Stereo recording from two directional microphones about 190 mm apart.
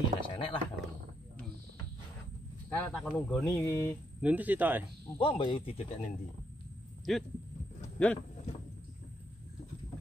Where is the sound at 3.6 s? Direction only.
15° left (ahead or behind).